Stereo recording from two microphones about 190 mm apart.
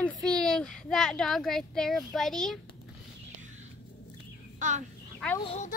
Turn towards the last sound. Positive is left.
turn(degrees=35)  # may be behind; listen again after turning